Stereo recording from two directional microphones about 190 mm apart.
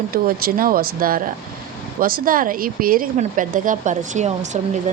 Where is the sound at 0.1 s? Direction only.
50° right (ahead or behind).